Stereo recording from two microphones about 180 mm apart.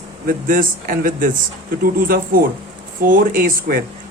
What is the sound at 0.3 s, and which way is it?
Speech, 50° right (ahead or behind).